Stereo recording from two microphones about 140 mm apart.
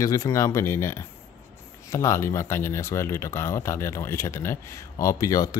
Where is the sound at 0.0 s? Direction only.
25° left (ahead or behind).